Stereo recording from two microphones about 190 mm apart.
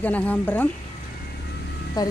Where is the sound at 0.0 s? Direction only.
10° left (ahead or behind).